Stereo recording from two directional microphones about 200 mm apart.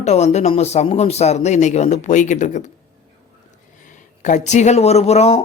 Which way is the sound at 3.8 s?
40° left (ahead or behind).